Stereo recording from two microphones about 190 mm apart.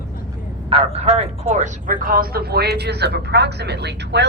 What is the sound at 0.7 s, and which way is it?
Speech, 30° right (ahead or behind).